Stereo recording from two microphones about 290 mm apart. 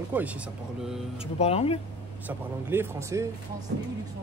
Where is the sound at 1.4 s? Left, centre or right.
Left.